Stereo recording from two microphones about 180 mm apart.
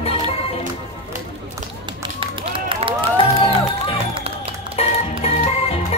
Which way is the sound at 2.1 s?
30° right (ahead or behind).